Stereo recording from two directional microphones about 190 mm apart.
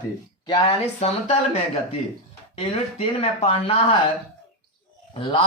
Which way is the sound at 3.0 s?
30° left (ahead or behind).